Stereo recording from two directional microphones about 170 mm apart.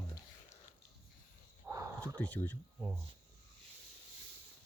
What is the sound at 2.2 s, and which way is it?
Speech, 10° left (ahead or behind).